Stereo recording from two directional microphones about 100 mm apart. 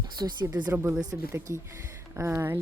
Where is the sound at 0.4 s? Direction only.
40° right (ahead or behind).